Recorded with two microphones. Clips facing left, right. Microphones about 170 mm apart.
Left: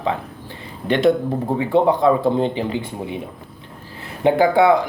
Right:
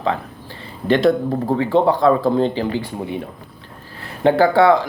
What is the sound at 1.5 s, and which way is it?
Speech, 15° left (ahead or behind).